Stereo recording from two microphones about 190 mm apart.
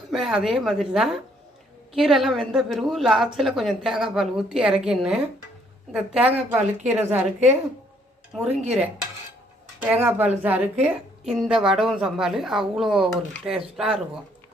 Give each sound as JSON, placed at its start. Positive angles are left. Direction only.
{"t": 0.1, "sound": "a woman's voice", "side_deg": 0}
{"t": 8.3, "sound": "a woman's voice", "side_deg": -5}
{"t": 10.0, "sound": "a woman's voice", "side_deg": -10}